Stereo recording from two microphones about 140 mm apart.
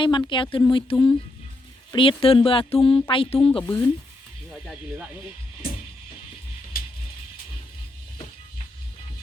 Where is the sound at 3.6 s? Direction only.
15° left (ahead or behind).